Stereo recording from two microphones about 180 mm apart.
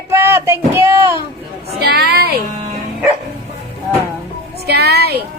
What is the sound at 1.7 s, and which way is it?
Speech, 60° right (ahead or behind).